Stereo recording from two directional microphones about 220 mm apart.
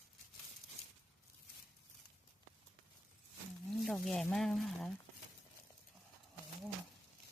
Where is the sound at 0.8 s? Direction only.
30° left (ahead or behind).